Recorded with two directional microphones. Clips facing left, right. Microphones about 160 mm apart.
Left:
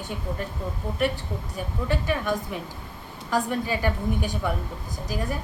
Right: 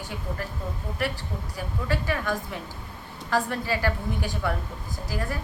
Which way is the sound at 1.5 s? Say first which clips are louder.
Left 1 dB; 20° left (ahead or behind).